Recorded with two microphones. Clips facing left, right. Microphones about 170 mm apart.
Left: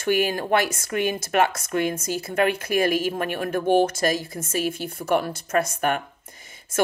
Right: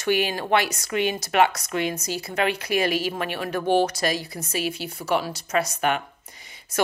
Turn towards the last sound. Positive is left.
turn(degrees=45)  # may be behind; listen again after turning